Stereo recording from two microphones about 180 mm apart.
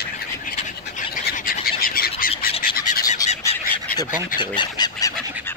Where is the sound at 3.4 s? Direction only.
15° left (ahead or behind).